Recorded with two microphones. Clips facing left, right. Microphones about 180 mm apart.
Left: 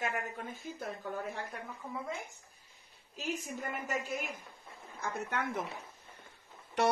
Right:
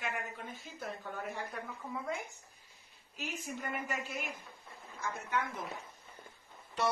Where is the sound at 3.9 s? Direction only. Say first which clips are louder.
Left 3 dB; 45° left (ahead or behind).